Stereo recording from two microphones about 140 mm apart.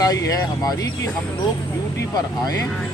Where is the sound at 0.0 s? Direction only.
25° left (ahead or behind).